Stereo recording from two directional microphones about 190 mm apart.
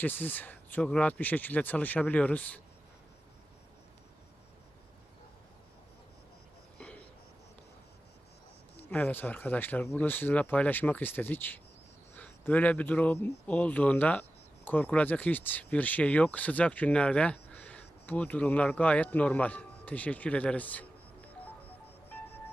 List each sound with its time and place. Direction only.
0.0 s speech: 10° left (ahead or behind)
6.7 s a sound: 5° left (ahead or behind)
8.9 s speech: 10° left (ahead or behind)